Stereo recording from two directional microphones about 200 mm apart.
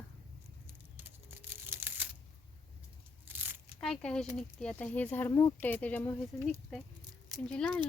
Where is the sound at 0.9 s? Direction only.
10° right (ahead or behind).